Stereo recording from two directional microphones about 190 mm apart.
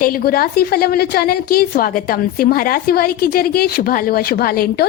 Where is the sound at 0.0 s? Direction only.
50° left (ahead or behind).